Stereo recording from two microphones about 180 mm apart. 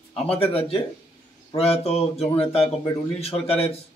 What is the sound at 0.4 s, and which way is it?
Speech, 35° left (ahead or behind).